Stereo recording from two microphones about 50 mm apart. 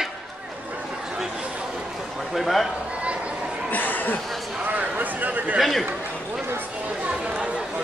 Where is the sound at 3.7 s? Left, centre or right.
Left.